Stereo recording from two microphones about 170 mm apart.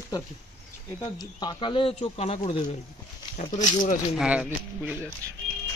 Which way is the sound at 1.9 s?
40° left (ahead or behind).